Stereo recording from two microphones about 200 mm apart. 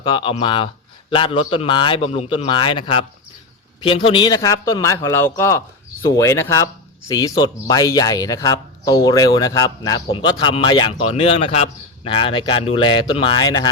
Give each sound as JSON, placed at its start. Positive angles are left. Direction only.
{"t": 0.0, "sound": "a man's voice", "side_deg": 25}